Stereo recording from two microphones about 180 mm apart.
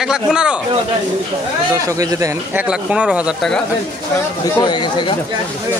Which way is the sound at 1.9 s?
20° right (ahead or behind).